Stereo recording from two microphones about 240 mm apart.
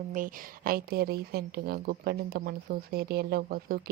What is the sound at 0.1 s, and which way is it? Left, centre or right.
A woman's voice, right.